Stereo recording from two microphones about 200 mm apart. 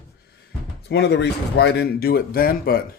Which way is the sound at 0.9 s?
60° left (ahead or behind).